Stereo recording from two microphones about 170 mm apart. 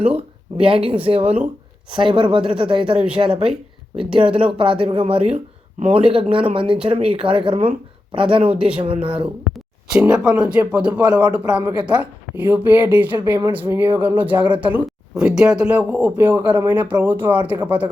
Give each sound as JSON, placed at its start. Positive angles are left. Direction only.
{"t": 0.5, "sound": "speech", "side_deg": -30}
{"t": 8.4, "sound": "speech", "side_deg": -5}
{"t": 8.8, "sound": "speech", "side_deg": -30}
{"t": 10.1, "sound": "speech", "side_deg": -5}